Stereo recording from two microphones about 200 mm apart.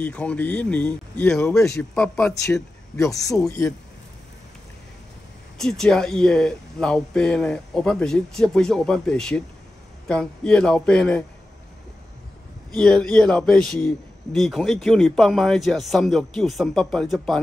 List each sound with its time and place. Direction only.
0.0 s a man's voice: 5° left (ahead or behind)
3.2 s speech: 15° left (ahead or behind)
5.6 s a man's voice: 5° left (ahead or behind)
12.7 s a man's voice: 5° left (ahead or behind)